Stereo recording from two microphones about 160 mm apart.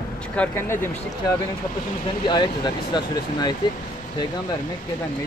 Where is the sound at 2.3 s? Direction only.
30° left (ahead or behind).